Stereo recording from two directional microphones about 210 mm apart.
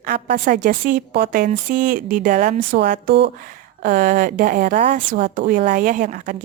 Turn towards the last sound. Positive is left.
turn(degrees=-35)  # may be behind; listen again after turning